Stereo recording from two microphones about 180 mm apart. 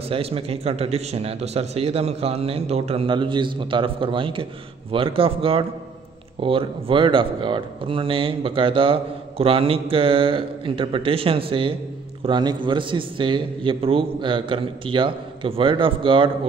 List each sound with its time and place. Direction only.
0.1 s speech: 30° right (ahead or behind)